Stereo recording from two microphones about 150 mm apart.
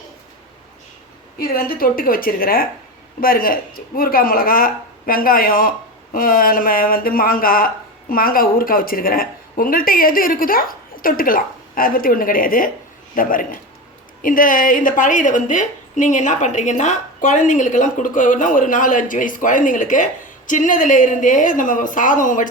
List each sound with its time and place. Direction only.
1.4 s a woman's voice: 75° left (ahead or behind)